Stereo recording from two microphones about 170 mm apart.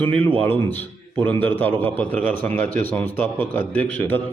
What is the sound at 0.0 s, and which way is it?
A man's voice, 10° left (ahead or behind).